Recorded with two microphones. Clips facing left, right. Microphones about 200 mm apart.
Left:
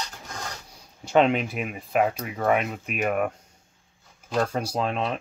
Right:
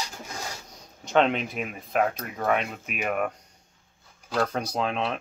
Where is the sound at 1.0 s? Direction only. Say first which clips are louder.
Left 2 dB; 5° left (ahead or behind).